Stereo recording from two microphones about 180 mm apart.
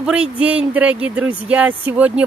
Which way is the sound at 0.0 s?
5° right (ahead or behind).